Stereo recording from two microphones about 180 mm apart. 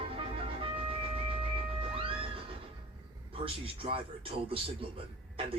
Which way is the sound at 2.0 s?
30° right (ahead or behind).